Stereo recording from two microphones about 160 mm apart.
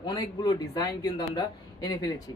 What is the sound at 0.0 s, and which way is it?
Speech, 25° left (ahead or behind).